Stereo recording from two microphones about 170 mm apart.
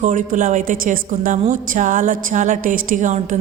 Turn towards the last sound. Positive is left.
turn(degrees=-50)  # may be behind; listen again after turning